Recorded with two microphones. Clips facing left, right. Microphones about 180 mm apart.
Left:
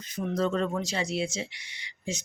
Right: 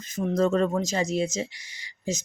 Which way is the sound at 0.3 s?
45° right (ahead or behind).